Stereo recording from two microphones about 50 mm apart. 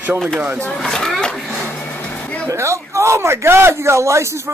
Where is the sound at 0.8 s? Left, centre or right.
Centre.